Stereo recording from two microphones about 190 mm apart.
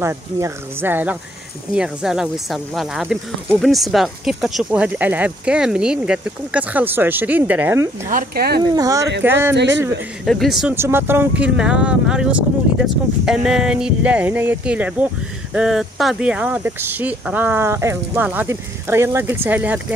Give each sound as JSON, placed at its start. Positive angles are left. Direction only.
{"t": 0.0, "sound": "speech", "side_deg": -15}
{"t": 8.1, "sound": "speech", "side_deg": -50}
{"t": 8.7, "sound": "speech", "side_deg": -20}
{"t": 10.2, "sound": "speech", "side_deg": 0}